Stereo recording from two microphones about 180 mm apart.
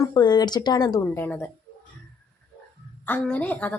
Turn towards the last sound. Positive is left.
turn(degrees=10)  # may be behind; listen again after turning